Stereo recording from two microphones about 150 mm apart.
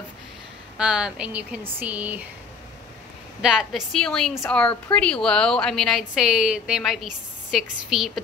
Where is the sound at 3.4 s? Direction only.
5° right (ahead or behind).